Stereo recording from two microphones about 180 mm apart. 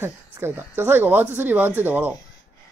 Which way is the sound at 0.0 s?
10° right (ahead or behind).